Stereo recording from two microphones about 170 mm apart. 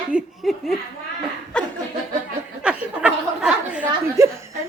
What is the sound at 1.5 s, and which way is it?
Laughter, 5° left (ahead or behind).